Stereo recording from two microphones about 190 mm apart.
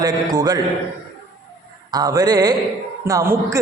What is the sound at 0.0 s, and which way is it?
Speech, 20° right (ahead or behind).